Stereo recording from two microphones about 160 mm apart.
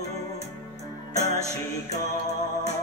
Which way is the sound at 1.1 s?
45° left (ahead or behind).